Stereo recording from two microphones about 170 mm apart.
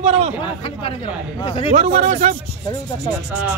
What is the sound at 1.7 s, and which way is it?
Speech, 45° right (ahead or behind).